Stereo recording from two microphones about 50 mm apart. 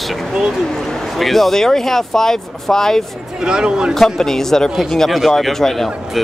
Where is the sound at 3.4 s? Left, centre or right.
Centre.